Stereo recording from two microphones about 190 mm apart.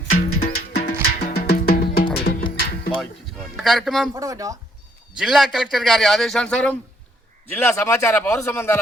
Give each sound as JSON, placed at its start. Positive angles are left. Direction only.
{"t": 0.3, "sound": "music", "side_deg": 55}
{"t": 3.6, "sound": "speech", "side_deg": 0}
{"t": 4.1, "sound": "speech", "side_deg": -15}
{"t": 5.1, "sound": "speech", "side_deg": 0}